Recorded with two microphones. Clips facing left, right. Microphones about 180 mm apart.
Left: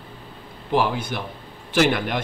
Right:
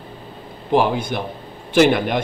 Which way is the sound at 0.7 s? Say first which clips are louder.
Right 4 dB; 20° right (ahead or behind).